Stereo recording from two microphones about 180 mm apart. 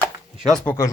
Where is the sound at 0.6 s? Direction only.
15° left (ahead or behind).